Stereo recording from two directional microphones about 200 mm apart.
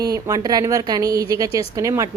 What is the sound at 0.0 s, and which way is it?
Speech, 20° right (ahead or behind).